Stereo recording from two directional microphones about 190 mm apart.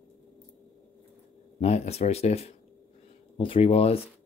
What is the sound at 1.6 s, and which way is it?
Speech, 35° left (ahead or behind).